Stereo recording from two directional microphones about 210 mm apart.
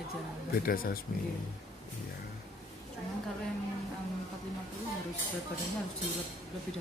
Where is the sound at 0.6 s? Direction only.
45° left (ahead or behind).